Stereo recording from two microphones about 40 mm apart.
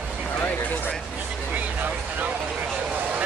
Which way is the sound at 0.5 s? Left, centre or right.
Left.